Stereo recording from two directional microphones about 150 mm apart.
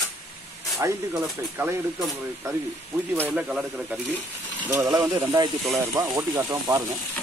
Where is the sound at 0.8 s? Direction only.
20° right (ahead or behind).